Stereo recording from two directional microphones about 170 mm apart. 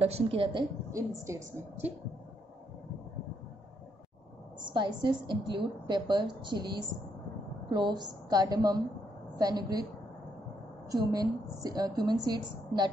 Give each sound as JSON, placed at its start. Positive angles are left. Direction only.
{"t": 0.0, "sound": "a woman's voice", "side_deg": -35}
{"t": 0.9, "sound": "a woman's voice", "side_deg": -15}
{"t": 4.6, "sound": "a woman's voice", "side_deg": -25}
{"t": 10.9, "sound": "a woman's voice", "side_deg": -20}